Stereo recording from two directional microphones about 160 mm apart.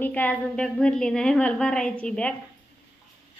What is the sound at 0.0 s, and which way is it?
A woman's voice, 10° left (ahead or behind).